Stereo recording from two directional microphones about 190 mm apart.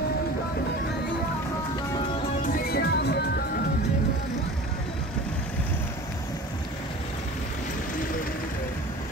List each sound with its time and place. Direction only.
2.4 s music: 50° left (ahead or behind)